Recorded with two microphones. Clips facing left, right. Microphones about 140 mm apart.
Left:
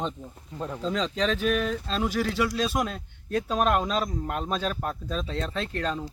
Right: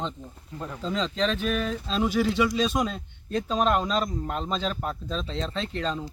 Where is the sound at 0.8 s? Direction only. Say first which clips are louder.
Even; centre (ahead or behind).